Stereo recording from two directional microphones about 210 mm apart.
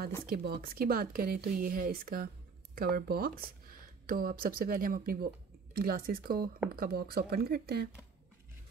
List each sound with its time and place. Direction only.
0.3 s speech: 45° right (ahead or behind)